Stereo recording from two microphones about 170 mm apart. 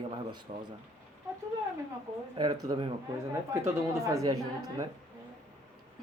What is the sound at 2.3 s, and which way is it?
Speech, 25° right (ahead or behind).